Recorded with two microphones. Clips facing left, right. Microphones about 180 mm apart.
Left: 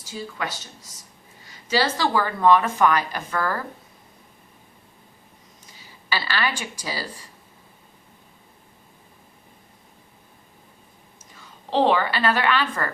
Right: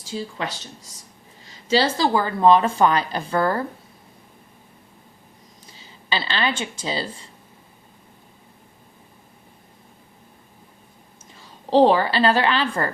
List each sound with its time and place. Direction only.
0.1 s speech: 30° right (ahead or behind)
5.7 s speech: 25° right (ahead or behind)
11.3 s a woman's voice: 35° right (ahead or behind)